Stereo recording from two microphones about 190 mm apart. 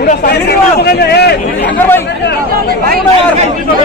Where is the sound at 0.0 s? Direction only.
55° left (ahead or behind).